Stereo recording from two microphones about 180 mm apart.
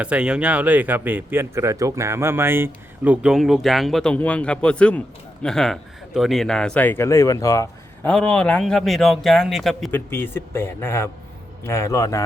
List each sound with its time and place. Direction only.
0.0 s speech: 5° right (ahead or behind); by 7.7 s 20° left (ahead or behind)
8.0 s speech: 5° left (ahead or behind)
9.9 s a man's voice: 10° left (ahead or behind)